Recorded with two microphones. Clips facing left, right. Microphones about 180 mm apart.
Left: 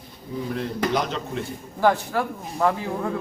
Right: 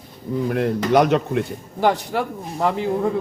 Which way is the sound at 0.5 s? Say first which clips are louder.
Right 8 dB; 60° right (ahead or behind).